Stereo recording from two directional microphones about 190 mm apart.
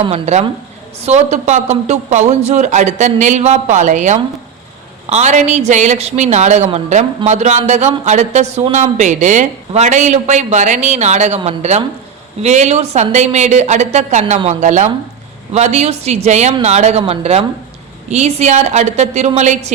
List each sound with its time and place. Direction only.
0.0 s a woman's voice: 35° right (ahead or behind)